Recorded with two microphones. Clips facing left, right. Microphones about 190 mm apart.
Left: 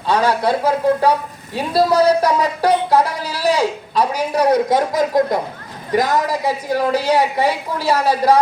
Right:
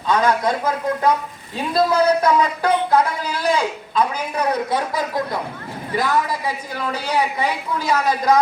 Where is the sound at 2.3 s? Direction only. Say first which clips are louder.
Left 1 dB; 35° left (ahead or behind).